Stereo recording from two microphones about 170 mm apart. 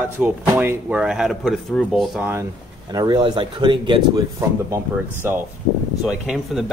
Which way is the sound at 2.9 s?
25° right (ahead or behind).